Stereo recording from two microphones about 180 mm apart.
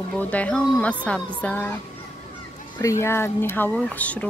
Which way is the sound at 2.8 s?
15° left (ahead or behind).